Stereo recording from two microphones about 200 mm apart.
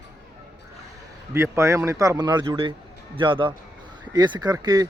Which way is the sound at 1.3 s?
15° right (ahead or behind).